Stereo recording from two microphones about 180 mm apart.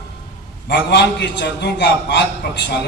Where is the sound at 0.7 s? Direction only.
75° left (ahead or behind).